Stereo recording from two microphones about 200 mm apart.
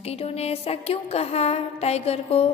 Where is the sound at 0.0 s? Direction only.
30° left (ahead or behind).